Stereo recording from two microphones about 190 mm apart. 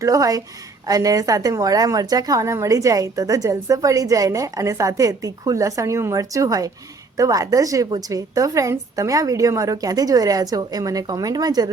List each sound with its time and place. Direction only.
0.0 s a woman's voice: 20° right (ahead or behind)